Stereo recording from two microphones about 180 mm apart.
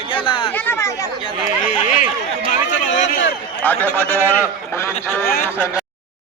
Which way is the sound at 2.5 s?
40° left (ahead or behind).